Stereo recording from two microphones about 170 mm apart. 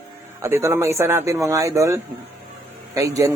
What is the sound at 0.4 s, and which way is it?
Speech, 15° right (ahead or behind).